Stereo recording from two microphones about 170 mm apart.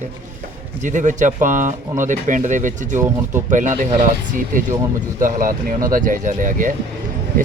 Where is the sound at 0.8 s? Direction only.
45° right (ahead or behind).